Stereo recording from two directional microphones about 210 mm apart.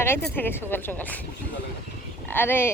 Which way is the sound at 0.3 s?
10° left (ahead or behind).